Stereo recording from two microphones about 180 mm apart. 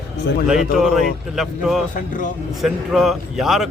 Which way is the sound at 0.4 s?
Centre (ahead or behind).